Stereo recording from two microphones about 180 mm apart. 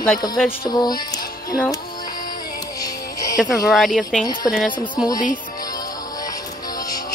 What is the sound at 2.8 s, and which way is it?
Music, 20° left (ahead or behind).